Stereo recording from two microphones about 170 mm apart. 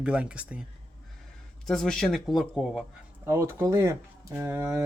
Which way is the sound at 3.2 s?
15° right (ahead or behind).